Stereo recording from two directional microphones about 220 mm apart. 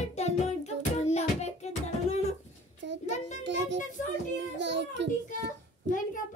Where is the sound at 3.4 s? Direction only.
55° right (ahead or behind).